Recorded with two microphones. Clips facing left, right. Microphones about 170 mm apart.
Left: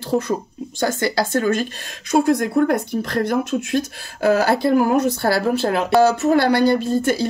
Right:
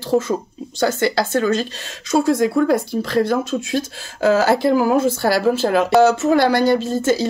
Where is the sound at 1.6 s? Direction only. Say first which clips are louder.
Even; 20° left (ahead or behind).